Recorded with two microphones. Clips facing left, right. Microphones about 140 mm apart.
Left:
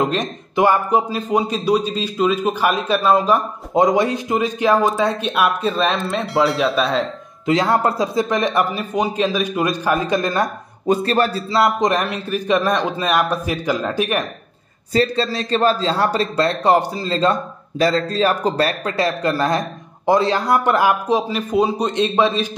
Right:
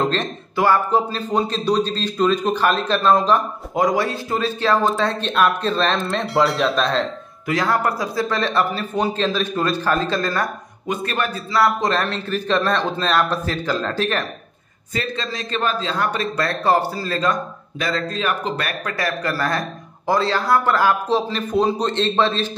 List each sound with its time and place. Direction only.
0.0 s speech: 10° left (ahead or behind)
3.7 s speech: 20° left (ahead or behind); by 7.1 s 5° left (ahead or behind)
7.4 s speech: 25° left (ahead or behind)
10.9 s speech: 35° left (ahead or behind); by 14.2 s 15° left (ahead or behind)
14.9 s a man's voice: 35° left (ahead or behind); by 22.6 s 10° left (ahead or behind)